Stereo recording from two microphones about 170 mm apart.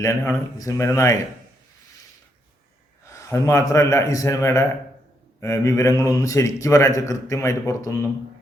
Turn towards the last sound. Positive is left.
turn(degrees=20)  # may be behind; listen again after turning